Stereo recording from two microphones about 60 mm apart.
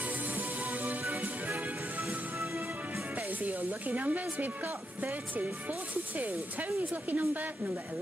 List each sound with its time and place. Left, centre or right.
0.0 s music: right
2.0 s music: right
3.2 s speech: right